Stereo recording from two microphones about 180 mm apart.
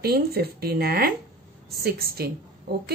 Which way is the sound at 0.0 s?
60° right (ahead or behind).